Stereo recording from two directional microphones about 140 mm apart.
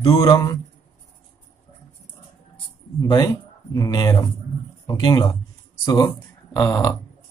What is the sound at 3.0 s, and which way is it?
Speech, 25° left (ahead or behind).